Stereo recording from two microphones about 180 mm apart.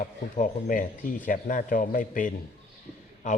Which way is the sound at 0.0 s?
45° left (ahead or behind).